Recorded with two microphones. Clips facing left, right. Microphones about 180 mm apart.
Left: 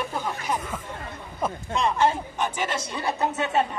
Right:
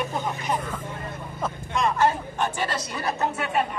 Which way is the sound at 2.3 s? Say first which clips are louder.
Right 1 dB; 20° left (ahead or behind).